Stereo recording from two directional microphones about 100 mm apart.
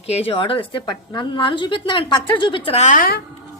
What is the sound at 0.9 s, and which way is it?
A woman's voice, 55° left (ahead or behind).